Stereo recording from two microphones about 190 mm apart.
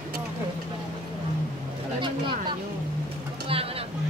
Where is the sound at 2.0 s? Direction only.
25° right (ahead or behind).